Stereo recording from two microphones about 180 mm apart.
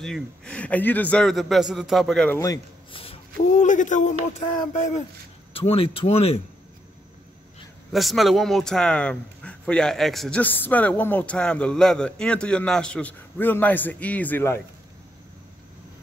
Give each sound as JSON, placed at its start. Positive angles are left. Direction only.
{"t": 0.0, "sound": "a man's voice", "side_deg": 5}
{"t": 2.3, "sound": "a man's voice", "side_deg": 20}
{"t": 3.0, "sound": "a sound", "side_deg": 30}
{"t": 3.6, "sound": "speech", "side_deg": 45}
{"t": 5.5, "sound": "a man's voice", "side_deg": 30}
{"t": 7.9, "sound": "a man's voice", "side_deg": 0}